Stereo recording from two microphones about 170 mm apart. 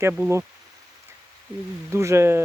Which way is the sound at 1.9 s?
15° right (ahead or behind).